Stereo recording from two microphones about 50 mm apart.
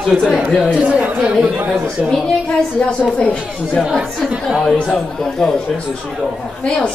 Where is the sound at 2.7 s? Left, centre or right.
Left.